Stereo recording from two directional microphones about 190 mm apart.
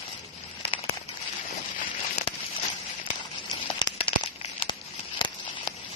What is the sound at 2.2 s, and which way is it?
Crumpling, 35° left (ahead or behind).